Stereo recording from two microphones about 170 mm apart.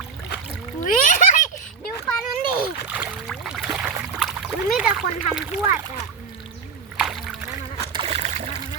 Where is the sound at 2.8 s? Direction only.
10° right (ahead or behind).